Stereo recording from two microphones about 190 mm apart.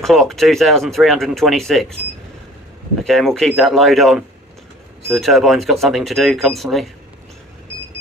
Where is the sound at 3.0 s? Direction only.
Centre (ahead or behind).